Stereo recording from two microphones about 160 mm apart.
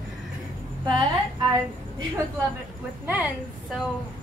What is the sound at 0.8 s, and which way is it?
Speech, 30° right (ahead or behind).